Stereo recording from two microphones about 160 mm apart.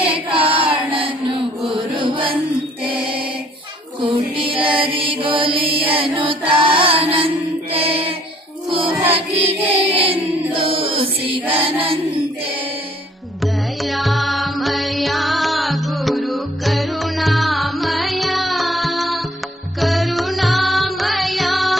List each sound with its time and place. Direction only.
0.0 s music: 35° right (ahead or behind)
1.9 s chant: 30° right (ahead or behind)
2.8 s choir: 10° right (ahead or behind)
4.0 s music: 30° right (ahead or behind)
5.9 s chant: 35° right (ahead or behind)
7.7 s music: 35° right (ahead or behind)
9.7 s music: 35° right (ahead or behind)
10.5 s chant: 35° right (ahead or behind)
13.4 s music: centre (ahead or behind)